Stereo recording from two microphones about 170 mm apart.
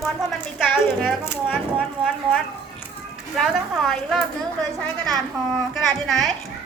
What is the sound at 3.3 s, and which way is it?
Speech, centre (ahead or behind).